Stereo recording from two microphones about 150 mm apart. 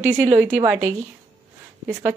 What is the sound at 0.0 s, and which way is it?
Speech, 15° right (ahead or behind).